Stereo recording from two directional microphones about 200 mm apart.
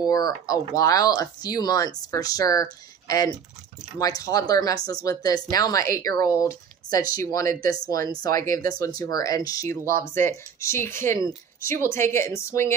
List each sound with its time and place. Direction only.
0.0 s speech: 20° left (ahead or behind)